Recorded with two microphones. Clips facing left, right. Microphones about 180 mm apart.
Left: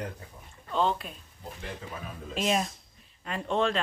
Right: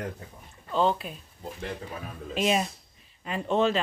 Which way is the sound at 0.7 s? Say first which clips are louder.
Right 3 dB; centre (ahead or behind).